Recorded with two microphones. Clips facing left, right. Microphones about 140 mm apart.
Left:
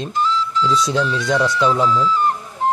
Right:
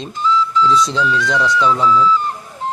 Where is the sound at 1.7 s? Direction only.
20° left (ahead or behind).